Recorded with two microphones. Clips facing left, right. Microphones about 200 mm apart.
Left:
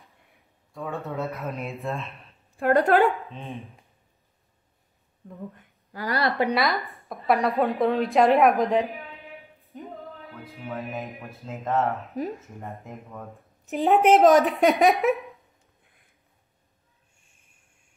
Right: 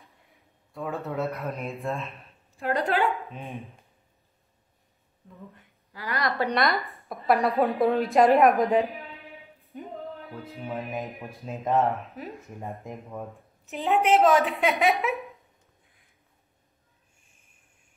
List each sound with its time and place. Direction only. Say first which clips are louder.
0.7 s speech: right 1 dB; centre (ahead or behind)
2.5 s a woman's voice: left 7 dB; 55° left (ahead or behind)
3.3 s speech: left 1 dB; 15° right (ahead or behind)
5.9 s a woman's voice: left 4 dB; 35° left (ahead or behind)
6.5 s speech: left 1 dB; centre (ahead or behind)
9.6 s music: right 2 dB; centre (ahead or behind)
10.4 s speech: left 1 dB; 15° right (ahead or behind)
12.2 s a woman's voice: left 9 dB; 40° left (ahead or behind)
12.6 s speech: right 2 dB; 15° right (ahead or behind)
13.8 s speech: left 5 dB; centre (ahead or behind)
14.1 s a woman's voice: left 3 dB; 40° left (ahead or behind)
14.7 s speech: left 4 dB; centre (ahead or behind)